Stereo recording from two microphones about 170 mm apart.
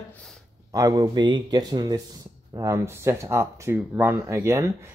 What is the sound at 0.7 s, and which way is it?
Speech, 20° right (ahead or behind).